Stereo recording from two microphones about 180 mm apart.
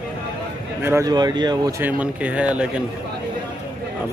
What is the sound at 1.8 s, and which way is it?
Speech, 10° right (ahead or behind).